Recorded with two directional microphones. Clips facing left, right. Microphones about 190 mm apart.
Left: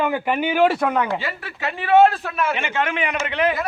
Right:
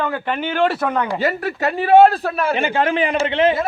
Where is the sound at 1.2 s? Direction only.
40° right (ahead or behind).